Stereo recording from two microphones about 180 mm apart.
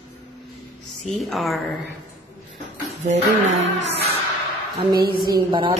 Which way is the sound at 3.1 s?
40° right (ahead or behind).